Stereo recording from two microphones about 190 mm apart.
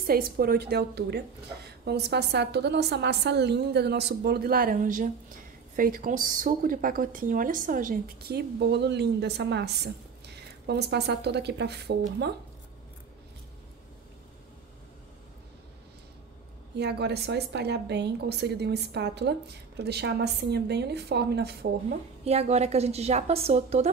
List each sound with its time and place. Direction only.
0.0 s a woman's voice: 50° right (ahead or behind)
16.7 s a woman's voice: 60° right (ahead or behind)
22.2 s a woman's voice: 35° right (ahead or behind)